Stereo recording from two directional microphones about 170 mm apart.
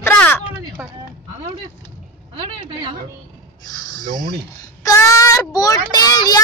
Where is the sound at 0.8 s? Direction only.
15° right (ahead or behind).